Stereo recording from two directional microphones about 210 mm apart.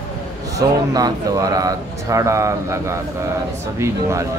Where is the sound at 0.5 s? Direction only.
15° right (ahead or behind).